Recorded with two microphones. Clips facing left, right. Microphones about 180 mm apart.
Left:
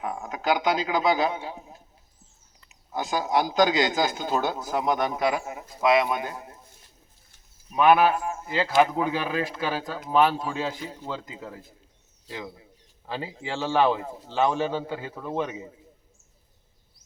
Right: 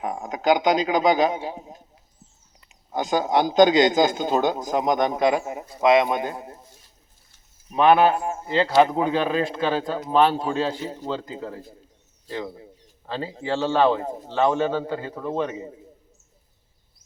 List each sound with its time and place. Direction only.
0.0 s a man's voice: 20° right (ahead or behind)
7.8 s a man's voice: 25° right (ahead or behind)
13.1 s a man's voice: 10° left (ahead or behind)
14.0 s speech: 40° right (ahead or behind)
14.3 s a man's voice: 15° left (ahead or behind)